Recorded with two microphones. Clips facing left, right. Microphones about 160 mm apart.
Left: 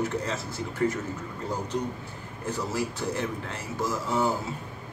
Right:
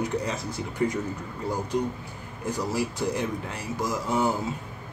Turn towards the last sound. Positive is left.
turn(degrees=-15)  # may be behind; listen again after turning